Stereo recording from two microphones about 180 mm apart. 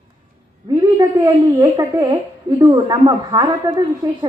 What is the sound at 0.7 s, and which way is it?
A woman's voice, 20° right (ahead or behind).